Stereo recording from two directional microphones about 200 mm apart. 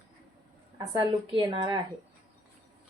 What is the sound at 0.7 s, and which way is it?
A woman's voice, 20° right (ahead or behind).